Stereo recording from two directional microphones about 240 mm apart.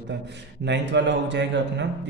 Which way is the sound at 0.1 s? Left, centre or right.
Right.